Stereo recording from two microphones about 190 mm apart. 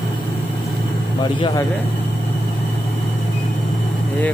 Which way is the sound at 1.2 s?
20° left (ahead or behind).